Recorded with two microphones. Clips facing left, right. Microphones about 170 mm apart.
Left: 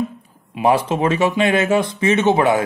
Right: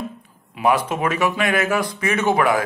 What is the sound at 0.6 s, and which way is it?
Speech, 25° left (ahead or behind).